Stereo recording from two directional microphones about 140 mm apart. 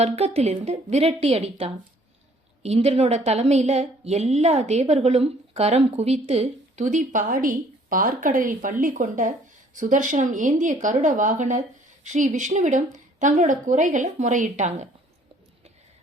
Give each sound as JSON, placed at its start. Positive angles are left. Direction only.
{"t": 0.0, "sound": "a woman's voice", "side_deg": -50}